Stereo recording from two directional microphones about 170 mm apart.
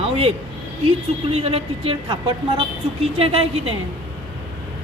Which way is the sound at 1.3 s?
35° right (ahead or behind).